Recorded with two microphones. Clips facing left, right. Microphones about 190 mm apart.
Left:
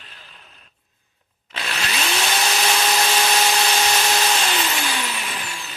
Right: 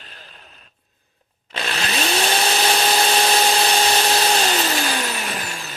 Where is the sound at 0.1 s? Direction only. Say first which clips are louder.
Right 3 dB; 40° right (ahead or behind).